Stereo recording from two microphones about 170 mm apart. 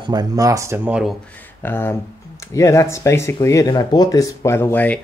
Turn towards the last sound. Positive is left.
turn(degrees=10)  # may be behind; listen again after turning